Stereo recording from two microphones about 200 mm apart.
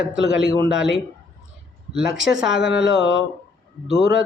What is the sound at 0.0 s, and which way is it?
Speech, 5° right (ahead or behind).